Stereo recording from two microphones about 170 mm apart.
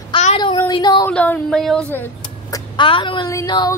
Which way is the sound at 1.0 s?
10° left (ahead or behind).